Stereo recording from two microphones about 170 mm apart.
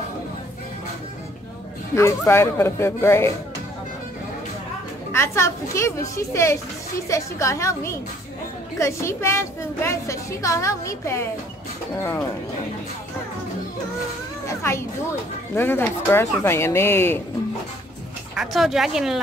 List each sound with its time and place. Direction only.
2.0 s a woman's voice: 15° left (ahead or behind)
5.1 s a woman's voice: 15° left (ahead or behind)
14.6 s a woman's voice: 15° left (ahead or behind)
18.3 s speech: centre (ahead or behind)